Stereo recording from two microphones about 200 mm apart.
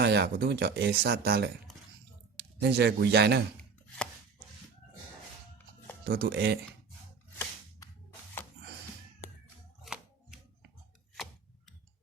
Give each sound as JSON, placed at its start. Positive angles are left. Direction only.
{"t": 0.0, "sound": "speech", "side_deg": -55}
{"t": 2.6, "sound": "a man's voice", "side_deg": -55}
{"t": 3.6, "sound": "chopping", "side_deg": 5}
{"t": 6.1, "sound": "speech", "side_deg": -50}
{"t": 9.8, "sound": "music", "side_deg": 0}